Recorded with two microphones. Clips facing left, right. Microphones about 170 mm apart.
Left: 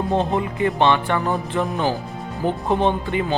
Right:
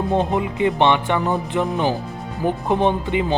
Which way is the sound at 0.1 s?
15° right (ahead or behind).